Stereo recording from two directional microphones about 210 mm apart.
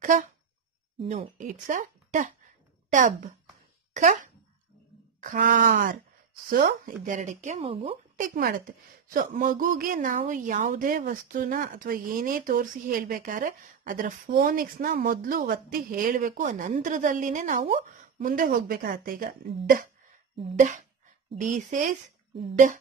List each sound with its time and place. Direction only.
0.1 s a woman's voice: 35° right (ahead or behind)
5.2 s a woman's voice: 40° right (ahead or behind)
20.3 s a woman's voice: 30° right (ahead or behind)